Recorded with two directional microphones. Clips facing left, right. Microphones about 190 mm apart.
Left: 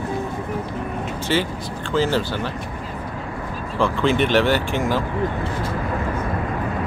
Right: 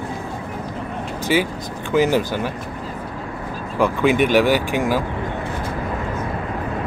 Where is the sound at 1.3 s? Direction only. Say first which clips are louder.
Right 3 dB; 10° right (ahead or behind).